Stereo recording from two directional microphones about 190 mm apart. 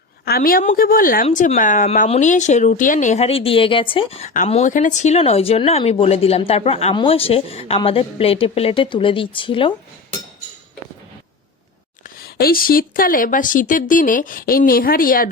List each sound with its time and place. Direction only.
0.3 s speech: 50° left (ahead or behind); by 9.7 s 25° left (ahead or behind)
12.0 s speech: 50° left (ahead or behind)